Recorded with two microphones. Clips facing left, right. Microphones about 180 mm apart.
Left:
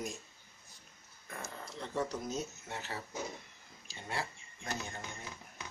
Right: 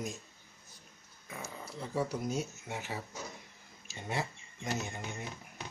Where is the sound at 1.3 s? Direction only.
5° right (ahead or behind).